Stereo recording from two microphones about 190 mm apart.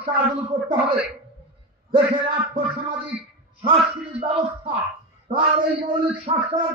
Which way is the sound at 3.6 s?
30° right (ahead or behind).